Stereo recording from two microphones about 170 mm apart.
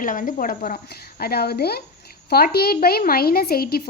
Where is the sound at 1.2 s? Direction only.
65° left (ahead or behind).